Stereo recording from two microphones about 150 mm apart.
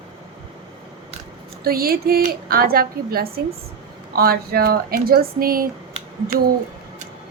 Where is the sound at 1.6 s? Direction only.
85° right.